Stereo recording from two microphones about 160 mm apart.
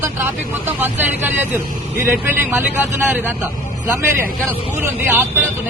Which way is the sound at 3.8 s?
15° right (ahead or behind).